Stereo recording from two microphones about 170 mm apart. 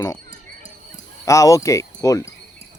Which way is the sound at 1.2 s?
20° left (ahead or behind).